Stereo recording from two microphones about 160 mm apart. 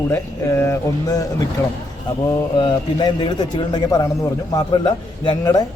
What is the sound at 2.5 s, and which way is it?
Speech, 30° left (ahead or behind).